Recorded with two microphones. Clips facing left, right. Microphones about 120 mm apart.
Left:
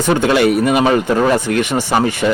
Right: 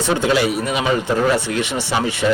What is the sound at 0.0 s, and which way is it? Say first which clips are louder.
Speech: left 4 dB; 60° left (ahead or behind).